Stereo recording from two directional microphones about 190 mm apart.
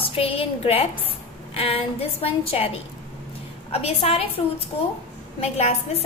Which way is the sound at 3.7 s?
30° left (ahead or behind).